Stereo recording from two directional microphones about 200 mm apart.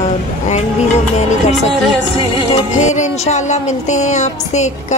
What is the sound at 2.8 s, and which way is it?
A woman's voice, 35° left (ahead or behind).